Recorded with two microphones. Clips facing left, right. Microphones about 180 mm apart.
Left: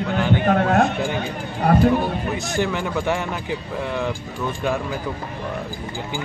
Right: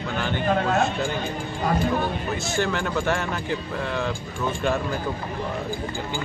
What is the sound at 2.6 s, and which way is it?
Speech, 15° left (ahead or behind).